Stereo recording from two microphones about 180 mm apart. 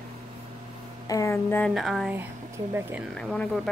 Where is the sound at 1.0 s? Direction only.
15° left (ahead or behind).